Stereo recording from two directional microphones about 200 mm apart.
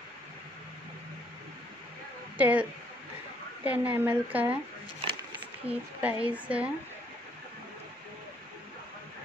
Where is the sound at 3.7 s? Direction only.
10° right (ahead or behind).